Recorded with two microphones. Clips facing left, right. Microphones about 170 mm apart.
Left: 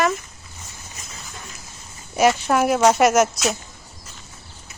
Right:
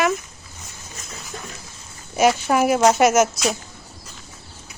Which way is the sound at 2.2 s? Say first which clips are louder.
Even; centre (ahead or behind).